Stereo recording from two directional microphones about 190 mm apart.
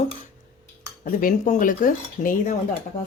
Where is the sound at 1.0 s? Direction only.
45° left (ahead or behind).